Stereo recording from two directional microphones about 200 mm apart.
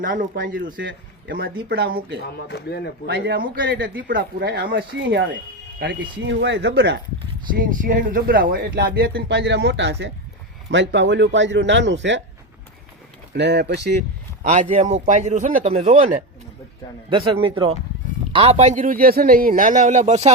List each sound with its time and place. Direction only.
0.0 s speech: 45° right (ahead or behind)
2.3 s speech: 55° left (ahead or behind)
3.1 s speech: 50° right (ahead or behind)
4.0 s speech: 45° right (ahead or behind)
7.5 s speech: 40° right (ahead or behind); by 12.2 s 65° right (ahead or behind)
13.3 s speech: 60° right (ahead or behind)
14.4 s a man's voice: 35° right (ahead or behind)